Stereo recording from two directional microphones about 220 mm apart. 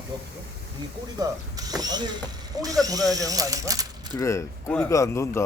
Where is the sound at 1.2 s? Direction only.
15° right (ahead or behind).